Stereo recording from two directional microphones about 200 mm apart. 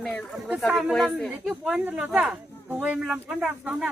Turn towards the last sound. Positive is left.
turn(degrees=-5)  # may be behind; listen again after turning